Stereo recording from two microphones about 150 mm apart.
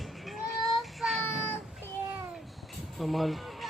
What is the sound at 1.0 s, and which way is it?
Child singing, centre (ahead or behind).